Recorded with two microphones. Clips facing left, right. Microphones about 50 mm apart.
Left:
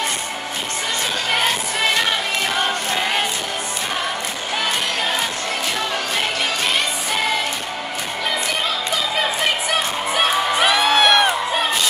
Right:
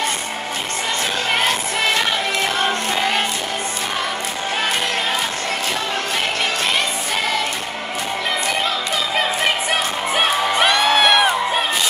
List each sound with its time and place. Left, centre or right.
10.6 s music: centre